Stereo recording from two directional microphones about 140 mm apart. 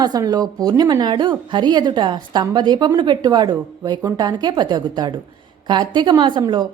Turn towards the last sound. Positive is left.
turn(degrees=-30)  # may be behind; listen again after turning